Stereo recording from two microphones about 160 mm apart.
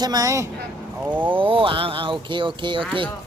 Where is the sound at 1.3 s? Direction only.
35° right (ahead or behind).